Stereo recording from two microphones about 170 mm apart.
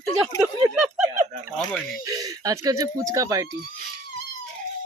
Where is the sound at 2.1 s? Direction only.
20° right (ahead or behind).